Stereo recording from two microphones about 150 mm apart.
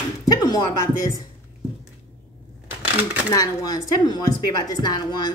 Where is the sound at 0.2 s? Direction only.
25° left (ahead or behind).